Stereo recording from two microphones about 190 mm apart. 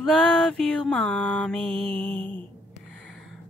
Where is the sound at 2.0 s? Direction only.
10° left (ahead or behind).